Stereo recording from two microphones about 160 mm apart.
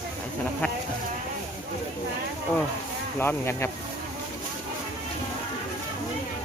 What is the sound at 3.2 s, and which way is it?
Speech, 15° left (ahead or behind).